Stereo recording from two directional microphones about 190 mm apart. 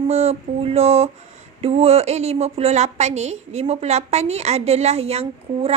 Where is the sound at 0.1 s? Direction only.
35° right (ahead or behind).